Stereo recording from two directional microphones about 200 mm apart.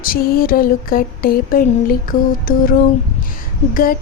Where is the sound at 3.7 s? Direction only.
45° left (ahead or behind).